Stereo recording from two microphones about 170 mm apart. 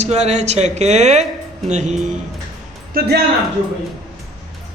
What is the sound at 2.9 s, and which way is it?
Speech, 60° right (ahead or behind).